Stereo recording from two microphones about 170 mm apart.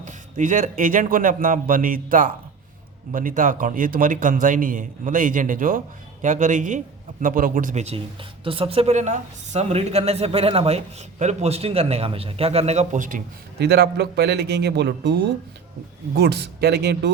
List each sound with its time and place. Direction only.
0.0 s a man's voice: 50° right (ahead or behind)
13.7 s a man's voice: 75° right (ahead or behind)